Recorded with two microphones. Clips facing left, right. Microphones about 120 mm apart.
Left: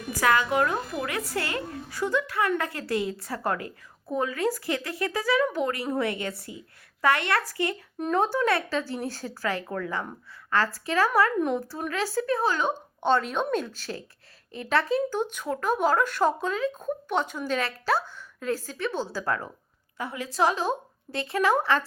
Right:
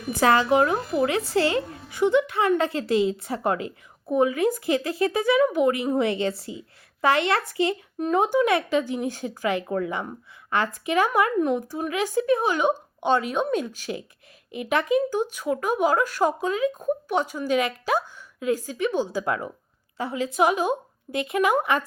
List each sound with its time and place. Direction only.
0.1 s a woman's voice: 30° right (ahead or behind)
7.9 s speech: centre (ahead or behind)
8.2 s speech: 15° right (ahead or behind)